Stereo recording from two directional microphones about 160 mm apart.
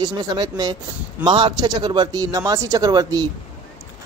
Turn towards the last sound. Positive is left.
turn(degrees=-25)  # may be behind; listen again after turning